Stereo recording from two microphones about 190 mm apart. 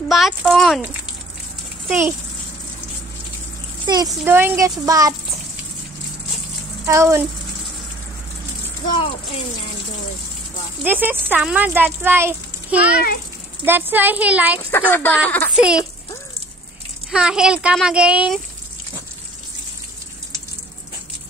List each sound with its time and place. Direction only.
0.1 s speech: centre (ahead or behind)
3.8 s a child's voice: 20° right (ahead or behind)
6.9 s speech: 15° right (ahead or behind)
8.9 s speech: 30° left (ahead or behind)
10.8 s speech: 10° right (ahead or behind)
14.7 s speech: 10° left (ahead or behind)
15.5 s speech: 5° right (ahead or behind)
17.1 s speech: 5° right (ahead or behind)